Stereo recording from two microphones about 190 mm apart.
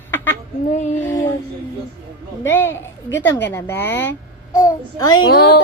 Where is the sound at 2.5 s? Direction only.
10° left (ahead or behind).